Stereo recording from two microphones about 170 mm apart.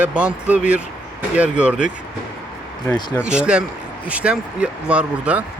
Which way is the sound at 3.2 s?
5° right (ahead or behind).